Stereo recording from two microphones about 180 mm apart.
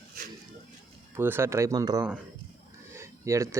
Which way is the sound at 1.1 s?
15° right (ahead or behind).